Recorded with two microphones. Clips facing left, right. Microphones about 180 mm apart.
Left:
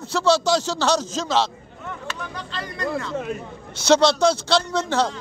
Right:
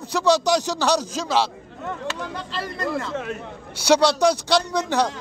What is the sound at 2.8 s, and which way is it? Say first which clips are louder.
Speech: left 2 dB; centre (ahead or behind).